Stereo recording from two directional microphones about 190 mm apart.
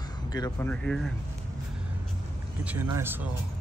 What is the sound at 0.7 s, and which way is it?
Speech, 5° left (ahead or behind).